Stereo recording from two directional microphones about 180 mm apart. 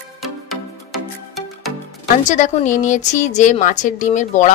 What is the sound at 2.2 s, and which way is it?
Speech, 45° left (ahead or behind).